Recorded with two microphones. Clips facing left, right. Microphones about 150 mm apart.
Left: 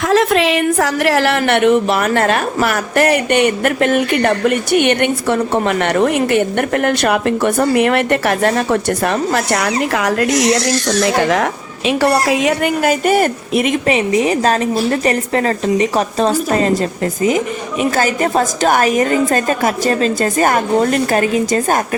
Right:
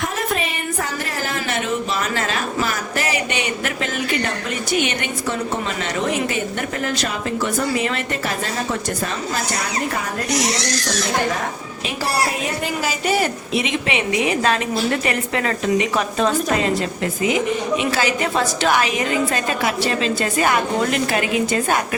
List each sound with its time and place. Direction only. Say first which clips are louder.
0.1 s a woman's voice: left 11 dB; 90° left; by 16.7 s 40° left (ahead or behind)
17.9 s a woman's voice: left 5 dB; 45° left (ahead or behind)